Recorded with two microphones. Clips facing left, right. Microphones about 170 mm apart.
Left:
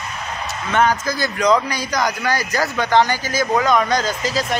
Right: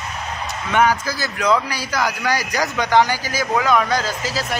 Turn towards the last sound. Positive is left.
turn(degrees=-5)  # may be behind; listen again after turning